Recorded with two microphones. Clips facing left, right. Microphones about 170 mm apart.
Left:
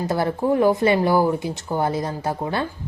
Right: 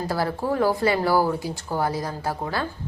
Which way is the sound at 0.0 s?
20° left (ahead or behind).